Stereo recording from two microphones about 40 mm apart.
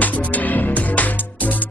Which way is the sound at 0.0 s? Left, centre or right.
Left.